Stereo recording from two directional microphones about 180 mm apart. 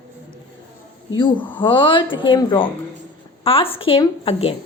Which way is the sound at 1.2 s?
25° left (ahead or behind).